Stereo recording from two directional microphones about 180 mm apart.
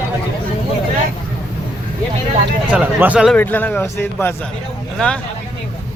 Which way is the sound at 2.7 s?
10° right (ahead or behind).